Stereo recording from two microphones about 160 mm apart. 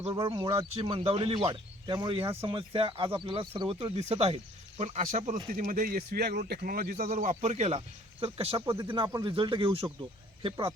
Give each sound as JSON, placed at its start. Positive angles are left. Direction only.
{"t": 0.3, "sound": "a man's voice", "side_deg": -35}
{"t": 7.4, "sound": "speech", "side_deg": -40}